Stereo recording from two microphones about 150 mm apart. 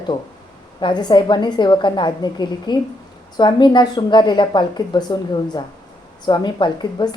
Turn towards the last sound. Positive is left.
turn(degrees=30)  # may be behind; listen again after turning